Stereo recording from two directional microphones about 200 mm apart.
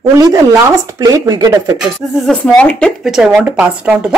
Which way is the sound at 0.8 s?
15° right (ahead or behind).